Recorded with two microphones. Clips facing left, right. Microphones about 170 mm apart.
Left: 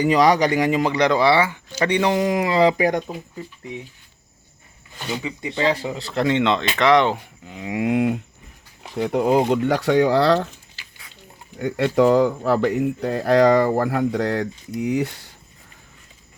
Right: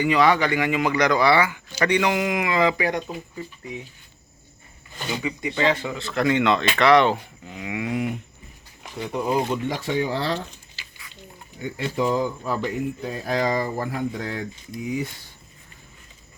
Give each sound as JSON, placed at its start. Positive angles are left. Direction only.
{"t": 0.0, "sound": "speech", "side_deg": 40}
{"t": 5.2, "sound": "speech", "side_deg": 30}
{"t": 7.6, "sound": "speech", "side_deg": 35}
{"t": 7.9, "sound": "speech", "side_deg": 70}
{"t": 11.6, "sound": "speech", "side_deg": 75}